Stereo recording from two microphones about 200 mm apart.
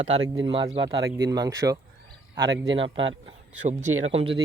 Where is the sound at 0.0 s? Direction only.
25° right (ahead or behind).